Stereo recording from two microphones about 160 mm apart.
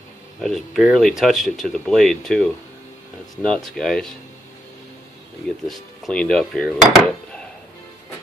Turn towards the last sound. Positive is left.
turn(degrees=5)  # may be behind; listen again after turning